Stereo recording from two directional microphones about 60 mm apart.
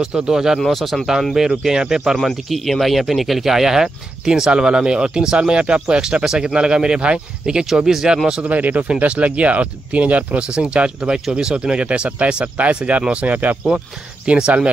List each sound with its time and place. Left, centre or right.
0.0 s speech: centre
0.6 s speech: centre
1.6 s speech: centre
2.1 s speech: centre
8.5 s speech: right